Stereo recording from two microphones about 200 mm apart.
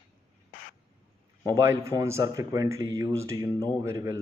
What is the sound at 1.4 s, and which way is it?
A man's voice, 15° right (ahead or behind).